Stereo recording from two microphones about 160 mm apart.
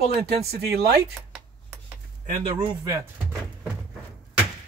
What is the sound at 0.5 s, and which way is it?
Speech, 80° right.